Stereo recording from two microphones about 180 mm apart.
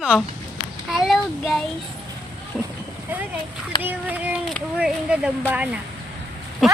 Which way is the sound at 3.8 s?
10° right (ahead or behind).